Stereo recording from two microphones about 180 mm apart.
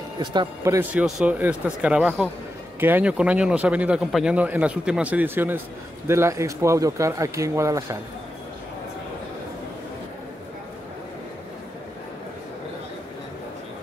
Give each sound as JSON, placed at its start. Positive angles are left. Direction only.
{"t": 0.2, "sound": "a man's voice", "side_deg": -25}
{"t": 0.7, "sound": "speech", "side_deg": -5}